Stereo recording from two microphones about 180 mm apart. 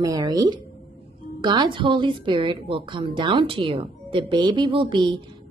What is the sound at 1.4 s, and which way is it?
A woman's voice, 25° right (ahead or behind).